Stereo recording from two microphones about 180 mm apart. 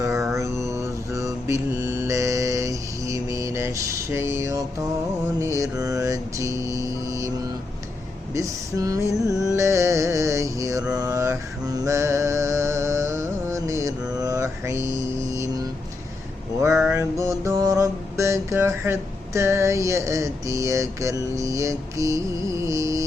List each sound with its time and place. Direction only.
0.0 s mantra: 15° right (ahead or behind)
8.3 s a sound: 15° right (ahead or behind)
9.6 s music: 15° right (ahead or behind)
10.9 s mantra: 20° right (ahead or behind)
15.3 s vehicle: 15° right (ahead or behind)
16.9 s music: 15° right (ahead or behind)